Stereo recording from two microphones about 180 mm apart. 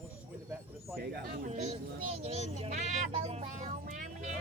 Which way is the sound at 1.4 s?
40° right (ahead or behind).